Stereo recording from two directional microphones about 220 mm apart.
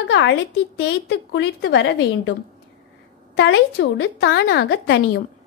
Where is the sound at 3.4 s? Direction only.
55° left (ahead or behind).